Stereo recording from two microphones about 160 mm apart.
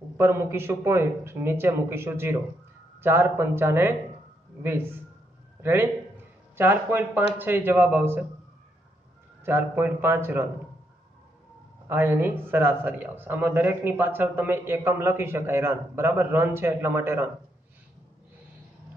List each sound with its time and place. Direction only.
0.2 s a man's voice: 15° right (ahead or behind)
9.4 s speech: 15° right (ahead or behind)
11.9 s speech: 15° right (ahead or behind)